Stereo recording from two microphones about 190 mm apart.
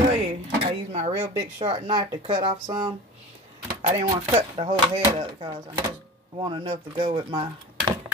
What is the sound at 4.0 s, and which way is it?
Speech, 25° right (ahead or behind).